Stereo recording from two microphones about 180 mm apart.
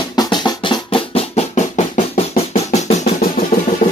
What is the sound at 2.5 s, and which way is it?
Music, 40° left (ahead or behind).